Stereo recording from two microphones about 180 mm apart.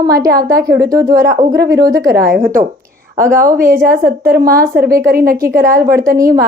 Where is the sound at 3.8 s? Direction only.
50° right (ahead or behind).